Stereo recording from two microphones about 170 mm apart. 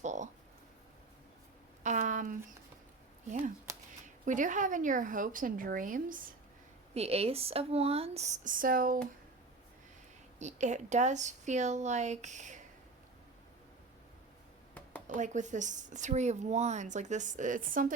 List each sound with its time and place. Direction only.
0.0 s a sound: 45° right (ahead or behind)
1.8 s a sound: 45° right (ahead or behind)
4.0 s a woman's voice: 50° right (ahead or behind)
6.9 s speech: 35° right (ahead or behind); by 9.0 s 55° right (ahead or behind)
10.3 s a woman's voice: 45° right (ahead or behind)
15.1 s a woman's voice: 45° right (ahead or behind)